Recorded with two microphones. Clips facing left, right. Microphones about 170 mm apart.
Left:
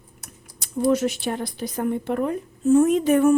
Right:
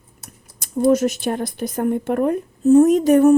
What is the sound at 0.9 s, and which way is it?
Speech, 45° right (ahead or behind).